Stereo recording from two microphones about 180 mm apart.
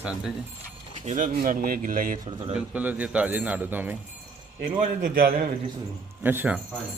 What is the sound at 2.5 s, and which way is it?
A man's voice, 10° right (ahead or behind).